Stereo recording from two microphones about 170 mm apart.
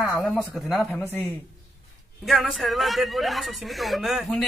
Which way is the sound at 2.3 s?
Centre (ahead or behind).